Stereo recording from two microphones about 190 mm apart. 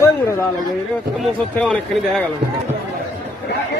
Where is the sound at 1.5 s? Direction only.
5° left (ahead or behind).